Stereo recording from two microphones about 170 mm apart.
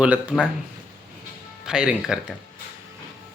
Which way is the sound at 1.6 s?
5° right (ahead or behind).